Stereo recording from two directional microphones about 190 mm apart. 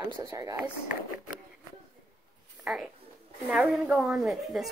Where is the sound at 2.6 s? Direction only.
Centre (ahead or behind).